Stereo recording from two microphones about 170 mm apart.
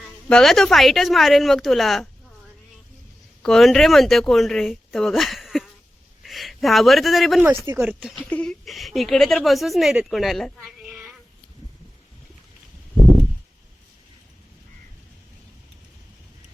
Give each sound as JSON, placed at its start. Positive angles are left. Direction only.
{"t": 0.3, "sound": "speech", "side_deg": 5}
{"t": 3.4, "sound": "speech", "side_deg": 0}
{"t": 7.4, "sound": "speech", "side_deg": -20}
{"t": 7.9, "sound": "speech", "side_deg": -5}